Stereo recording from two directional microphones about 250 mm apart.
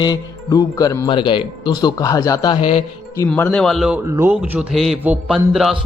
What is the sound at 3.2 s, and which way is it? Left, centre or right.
A man's voice, centre.